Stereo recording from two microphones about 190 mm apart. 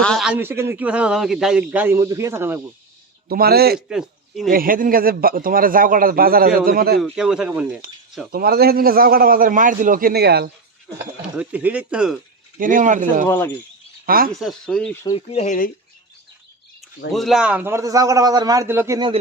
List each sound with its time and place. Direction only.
0.0 s a man's voice: centre (ahead or behind)
0.3 s a man's voice: 10° right (ahead or behind)
3.2 s a man's voice: 55° right (ahead or behind)
3.8 s speech: 5° right (ahead or behind)
4.5 s a man's voice: 50° right (ahead or behind)
7.0 s speech: 5° right (ahead or behind)
8.3 s a man's voice: 50° right (ahead or behind)
11.2 s a man's voice: 5° right (ahead or behind)
12.5 s a man's voice: 45° right (ahead or behind)
13.2 s speech: 15° left (ahead or behind)
14.3 s speech: centre (ahead or behind)
15.0 s speech: 30° left (ahead or behind)
17.1 s a man's voice: centre (ahead or behind)
18.9 s speech: 25° right (ahead or behind)